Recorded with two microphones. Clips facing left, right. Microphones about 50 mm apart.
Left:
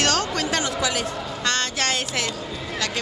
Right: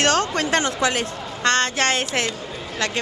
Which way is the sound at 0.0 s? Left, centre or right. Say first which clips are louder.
Right 3 dB; right.